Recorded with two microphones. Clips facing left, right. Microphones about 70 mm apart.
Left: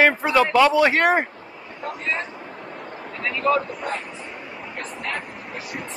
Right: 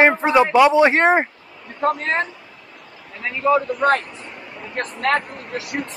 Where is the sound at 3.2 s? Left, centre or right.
Right.